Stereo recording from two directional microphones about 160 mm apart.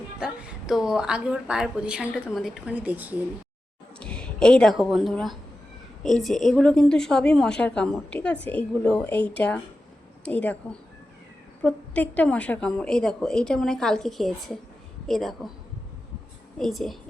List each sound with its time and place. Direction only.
0.2 s a woman's voice: 5° right (ahead or behind)
4.0 s a woman's voice: 5° left (ahead or behind)
10.2 s a woman's voice: 10° left (ahead or behind)
16.6 s a woman's voice: centre (ahead or behind)